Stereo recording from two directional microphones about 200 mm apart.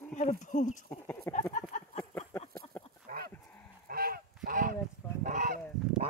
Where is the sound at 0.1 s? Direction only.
35° left (ahead or behind).